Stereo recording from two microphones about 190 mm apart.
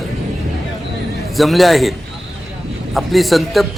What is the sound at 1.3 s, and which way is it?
A man's voice, centre (ahead or behind).